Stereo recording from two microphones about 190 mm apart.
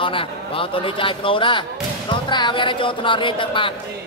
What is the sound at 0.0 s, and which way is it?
A man's voice, 25° left (ahead or behind).